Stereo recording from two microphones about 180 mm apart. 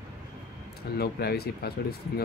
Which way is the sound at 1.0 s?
60° left (ahead or behind).